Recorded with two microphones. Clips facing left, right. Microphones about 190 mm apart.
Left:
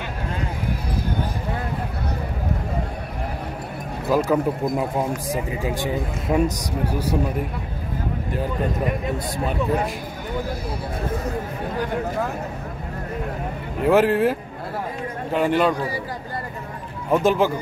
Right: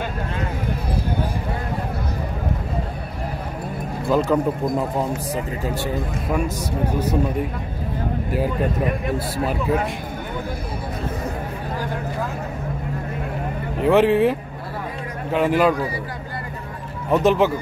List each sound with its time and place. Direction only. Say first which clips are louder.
4.1 s speech: right 1 dB; 10° left (ahead or behind)
13.8 s speech: right 1 dB; centre (ahead or behind)
17.1 s speech: right 1 dB; centre (ahead or behind)